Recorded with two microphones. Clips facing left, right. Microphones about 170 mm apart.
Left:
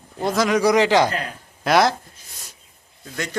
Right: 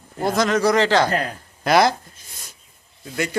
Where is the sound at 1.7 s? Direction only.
Centre (ahead or behind).